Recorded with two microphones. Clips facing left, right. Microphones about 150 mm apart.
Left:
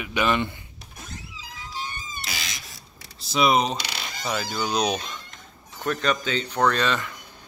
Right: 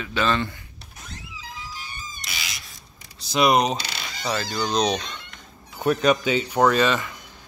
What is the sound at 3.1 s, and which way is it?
Speech, centre (ahead or behind).